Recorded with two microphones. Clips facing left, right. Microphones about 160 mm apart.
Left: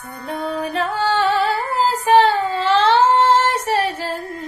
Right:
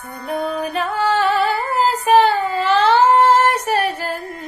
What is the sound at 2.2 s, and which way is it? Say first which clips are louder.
Child singing: even; 30° left (ahead or behind).